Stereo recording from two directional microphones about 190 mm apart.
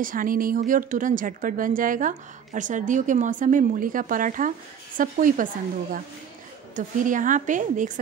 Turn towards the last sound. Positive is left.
turn(degrees=-40)  # may be behind; listen again after turning